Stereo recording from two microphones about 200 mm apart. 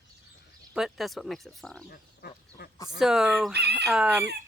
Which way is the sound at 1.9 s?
50° left (ahead or behind).